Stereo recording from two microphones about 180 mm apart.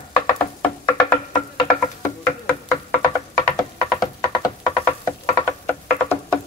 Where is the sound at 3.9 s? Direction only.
20° left (ahead or behind).